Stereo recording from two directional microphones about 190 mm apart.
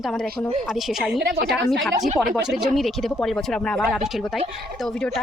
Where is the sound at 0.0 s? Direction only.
Centre (ahead or behind).